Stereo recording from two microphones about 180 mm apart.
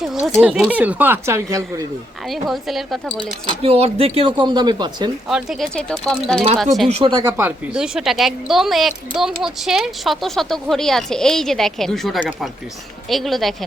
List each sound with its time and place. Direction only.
0.0 s a woman's voice: centre (ahead or behind); by 1.9 s 20° right (ahead or behind)
2.3 s a woman's voice: centre (ahead or behind)
3.5 s speech: 35° right (ahead or behind)
5.3 s a woman's voice: centre (ahead or behind)
7.0 s a woman's voice: 25° right (ahead or behind); by 13.7 s centre (ahead or behind)